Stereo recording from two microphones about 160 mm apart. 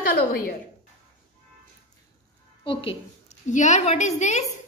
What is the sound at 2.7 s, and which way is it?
Speech, 35° left (ahead or behind).